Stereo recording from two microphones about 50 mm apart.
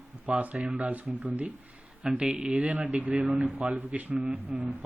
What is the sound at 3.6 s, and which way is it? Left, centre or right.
Speech, right.